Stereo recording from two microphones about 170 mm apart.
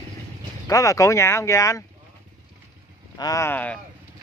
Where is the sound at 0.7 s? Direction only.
20° left (ahead or behind).